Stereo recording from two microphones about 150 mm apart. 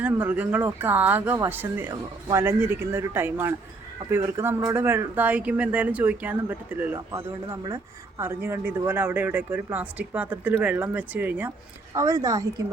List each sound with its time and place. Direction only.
0.0 s a woman's voice: 10° right (ahead or behind)